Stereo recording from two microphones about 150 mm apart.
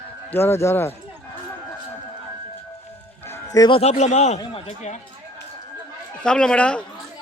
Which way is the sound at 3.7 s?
45° left (ahead or behind).